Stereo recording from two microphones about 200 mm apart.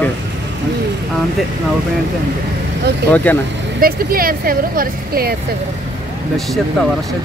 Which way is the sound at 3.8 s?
45° right (ahead or behind).